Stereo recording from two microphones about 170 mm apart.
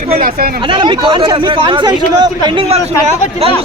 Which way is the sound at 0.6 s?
30° right (ahead or behind).